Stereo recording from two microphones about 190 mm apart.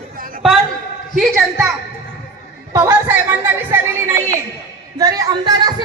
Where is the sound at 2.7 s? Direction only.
15° right (ahead or behind).